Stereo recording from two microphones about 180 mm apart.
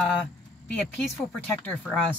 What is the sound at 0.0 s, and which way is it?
Speech, centre (ahead or behind).